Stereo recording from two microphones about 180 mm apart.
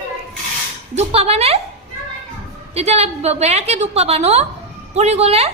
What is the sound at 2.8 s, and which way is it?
A woman's voice, 35° right (ahead or behind).